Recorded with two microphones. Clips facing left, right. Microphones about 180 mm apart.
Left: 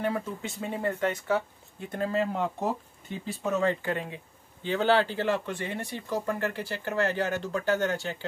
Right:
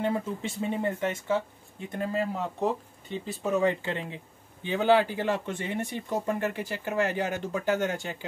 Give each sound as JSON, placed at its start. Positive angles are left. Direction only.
{"t": 0.0, "sound": "speech", "side_deg": -25}
{"t": 1.9, "sound": "speech", "side_deg": -15}
{"t": 2.3, "sound": "speech", "side_deg": 0}
{"t": 3.5, "sound": "speech", "side_deg": -20}
{"t": 4.6, "sound": "speech", "side_deg": -15}